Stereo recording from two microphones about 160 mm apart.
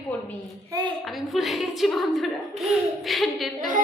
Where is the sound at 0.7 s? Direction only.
25° right (ahead or behind).